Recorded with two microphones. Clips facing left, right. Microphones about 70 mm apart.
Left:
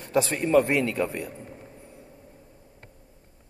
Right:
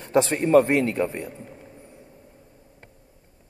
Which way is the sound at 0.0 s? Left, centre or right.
Right.